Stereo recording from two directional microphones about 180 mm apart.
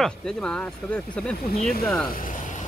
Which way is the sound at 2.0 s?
50° left (ahead or behind).